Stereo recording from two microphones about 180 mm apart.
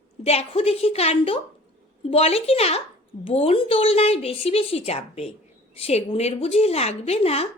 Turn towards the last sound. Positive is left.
turn(degrees=35)  # may be behind; listen again after turning